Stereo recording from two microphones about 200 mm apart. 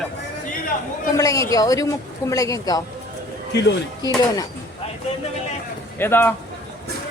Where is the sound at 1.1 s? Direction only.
15° left (ahead or behind).